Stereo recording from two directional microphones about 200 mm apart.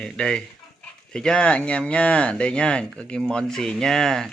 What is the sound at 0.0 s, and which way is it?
Speech, 5° left (ahead or behind).